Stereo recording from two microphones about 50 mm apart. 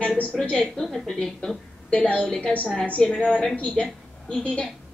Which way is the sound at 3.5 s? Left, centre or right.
Left.